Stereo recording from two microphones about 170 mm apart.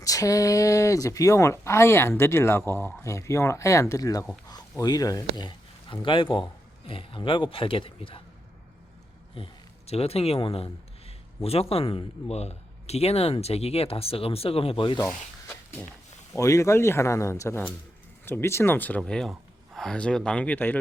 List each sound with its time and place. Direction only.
0.0 s speech: 20° left (ahead or behind)
9.3 s speech: 35° left (ahead or behind)
16.3 s speech: 20° left (ahead or behind)